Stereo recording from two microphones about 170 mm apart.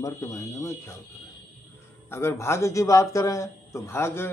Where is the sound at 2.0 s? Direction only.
15° left (ahead or behind).